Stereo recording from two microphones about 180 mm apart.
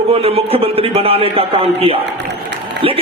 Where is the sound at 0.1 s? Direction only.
30° right (ahead or behind).